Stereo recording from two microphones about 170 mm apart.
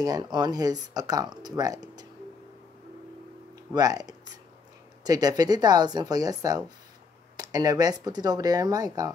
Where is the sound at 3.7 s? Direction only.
20° right (ahead or behind).